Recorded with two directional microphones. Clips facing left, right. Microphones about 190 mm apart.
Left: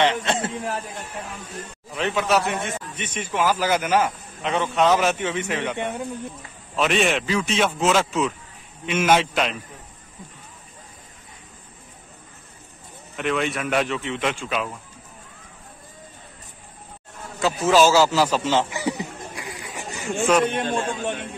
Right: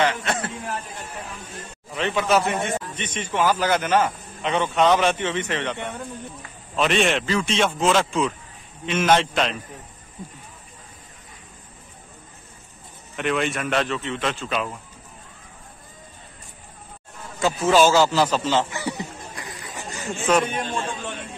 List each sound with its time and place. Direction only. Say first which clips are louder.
0.0 s a man's voice: left 2 dB; 25° left (ahead or behind)
2.0 s a man's voice: right 1 dB; centre (ahead or behind)
13.1 s speech: even; centre (ahead or behind)
17.4 s a man's voice: even; centre (ahead or behind)
18.4 s a sound: left 1 dB; 15° left (ahead or behind)
20.2 s a man's voice: left 1 dB; centre (ahead or behind)
20.5 s a man's voice: left 3 dB; 55° left (ahead or behind)